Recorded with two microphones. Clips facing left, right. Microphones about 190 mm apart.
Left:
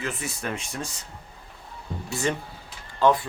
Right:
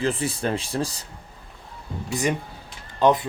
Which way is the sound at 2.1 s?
15° right (ahead or behind).